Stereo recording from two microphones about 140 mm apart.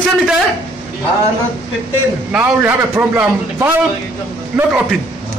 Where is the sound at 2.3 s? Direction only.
10° right (ahead or behind).